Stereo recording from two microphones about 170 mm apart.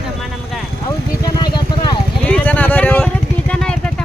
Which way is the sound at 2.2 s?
10° left (ahead or behind).